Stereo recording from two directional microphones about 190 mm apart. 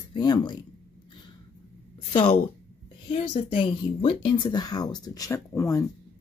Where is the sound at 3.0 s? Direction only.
30° left (ahead or behind).